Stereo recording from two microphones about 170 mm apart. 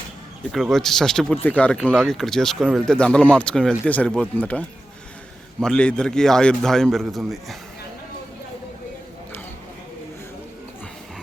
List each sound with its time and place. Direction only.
0.5 s speech: centre (ahead or behind)